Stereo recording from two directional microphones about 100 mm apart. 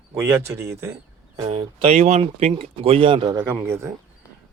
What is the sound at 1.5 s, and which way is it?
Speech, 75° right (ahead or behind).